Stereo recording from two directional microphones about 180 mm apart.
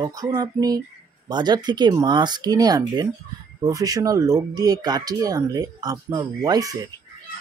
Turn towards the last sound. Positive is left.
turn(degrees=-20)  # may be behind; listen again after turning